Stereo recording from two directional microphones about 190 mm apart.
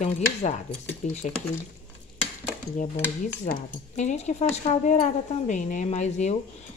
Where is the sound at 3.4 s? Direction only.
40° left (ahead or behind).